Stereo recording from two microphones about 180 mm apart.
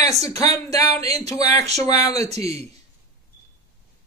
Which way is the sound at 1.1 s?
20° left (ahead or behind).